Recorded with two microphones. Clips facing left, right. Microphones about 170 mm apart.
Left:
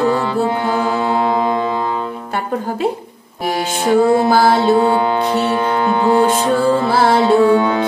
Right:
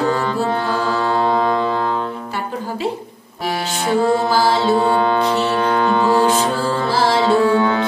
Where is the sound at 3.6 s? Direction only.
15° left (ahead or behind).